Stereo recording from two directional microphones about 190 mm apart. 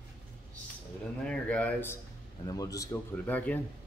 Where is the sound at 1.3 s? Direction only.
5° left (ahead or behind).